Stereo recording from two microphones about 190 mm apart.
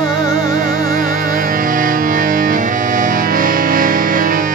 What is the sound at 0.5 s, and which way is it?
Music, 45° right (ahead or behind).